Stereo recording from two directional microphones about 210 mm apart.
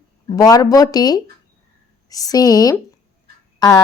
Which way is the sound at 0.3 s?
15° left (ahead or behind).